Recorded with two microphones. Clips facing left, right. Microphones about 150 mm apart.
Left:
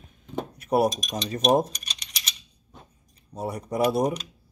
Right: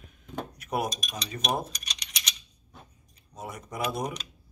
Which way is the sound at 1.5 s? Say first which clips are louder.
Left 10 dB; 40° left (ahead or behind).